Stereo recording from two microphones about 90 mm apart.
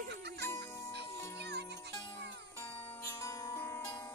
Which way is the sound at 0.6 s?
40° left (ahead or behind).